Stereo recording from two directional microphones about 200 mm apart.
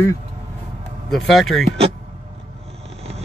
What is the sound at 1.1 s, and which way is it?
Speech, centre (ahead or behind).